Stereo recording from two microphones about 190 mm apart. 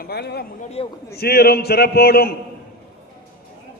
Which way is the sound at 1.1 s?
55° left (ahead or behind).